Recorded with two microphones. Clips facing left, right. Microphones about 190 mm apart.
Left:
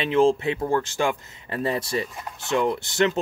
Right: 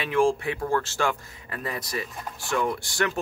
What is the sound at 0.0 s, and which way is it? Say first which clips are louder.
Speech: left 3 dB; 20° left (ahead or behind).